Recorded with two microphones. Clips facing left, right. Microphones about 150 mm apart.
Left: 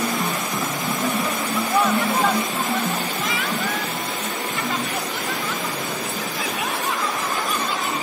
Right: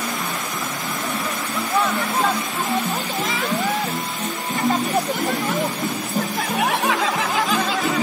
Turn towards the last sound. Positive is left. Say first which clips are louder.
# right 4 dB
turn(degrees=-85)